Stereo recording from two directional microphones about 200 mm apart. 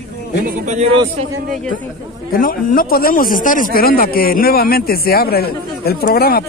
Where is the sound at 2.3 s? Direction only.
45° left (ahead or behind).